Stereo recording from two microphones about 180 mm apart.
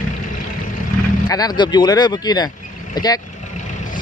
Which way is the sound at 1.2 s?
20° left (ahead or behind).